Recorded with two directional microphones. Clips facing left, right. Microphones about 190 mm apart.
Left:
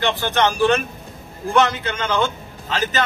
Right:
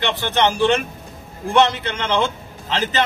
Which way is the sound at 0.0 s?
20° right (ahead or behind).